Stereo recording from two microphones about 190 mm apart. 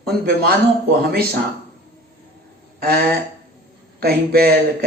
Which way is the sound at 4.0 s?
55° right (ahead or behind).